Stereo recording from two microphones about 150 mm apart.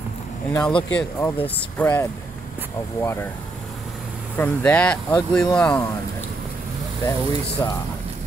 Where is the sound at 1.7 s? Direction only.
15° left (ahead or behind).